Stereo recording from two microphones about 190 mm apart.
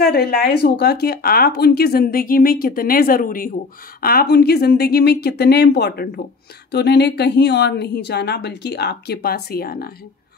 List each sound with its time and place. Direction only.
0.0 s speech: 55° left (ahead or behind)